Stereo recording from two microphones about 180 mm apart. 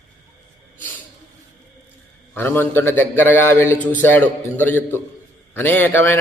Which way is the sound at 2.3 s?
10° left (ahead or behind).